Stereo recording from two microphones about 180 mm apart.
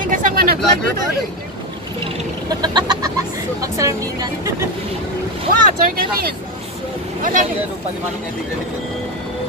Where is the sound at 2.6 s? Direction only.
25° right (ahead or behind).